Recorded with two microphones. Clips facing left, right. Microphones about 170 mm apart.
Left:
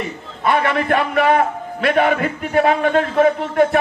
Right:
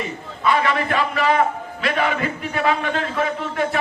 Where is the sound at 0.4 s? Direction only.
55° left (ahead or behind).